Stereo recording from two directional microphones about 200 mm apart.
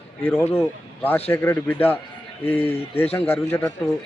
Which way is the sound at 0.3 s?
10° left (ahead or behind).